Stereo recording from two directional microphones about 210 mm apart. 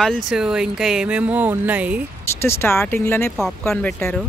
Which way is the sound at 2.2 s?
10° left (ahead or behind).